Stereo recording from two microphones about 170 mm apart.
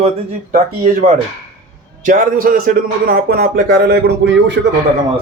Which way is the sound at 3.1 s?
65° right (ahead or behind).